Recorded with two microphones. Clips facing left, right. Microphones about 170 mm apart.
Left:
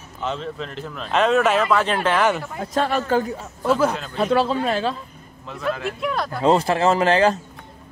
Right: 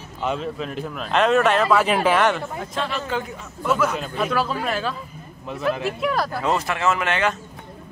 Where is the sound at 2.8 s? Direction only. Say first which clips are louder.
Left 7 dB; 45° left (ahead or behind).